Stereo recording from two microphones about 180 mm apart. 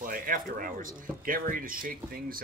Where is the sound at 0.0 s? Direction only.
50° right (ahead or behind).